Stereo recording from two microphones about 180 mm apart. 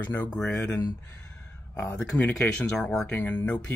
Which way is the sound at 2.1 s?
5° left (ahead or behind).